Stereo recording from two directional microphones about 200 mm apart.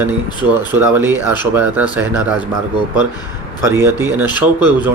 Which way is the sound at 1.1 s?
20° left (ahead or behind).